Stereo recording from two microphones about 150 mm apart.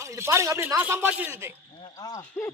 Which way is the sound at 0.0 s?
20° right (ahead or behind).